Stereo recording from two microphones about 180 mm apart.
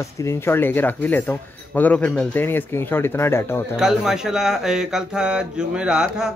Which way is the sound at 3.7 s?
5° right (ahead or behind).